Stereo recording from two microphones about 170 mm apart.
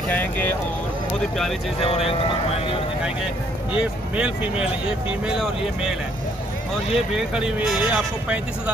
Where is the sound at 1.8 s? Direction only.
35° left (ahead or behind).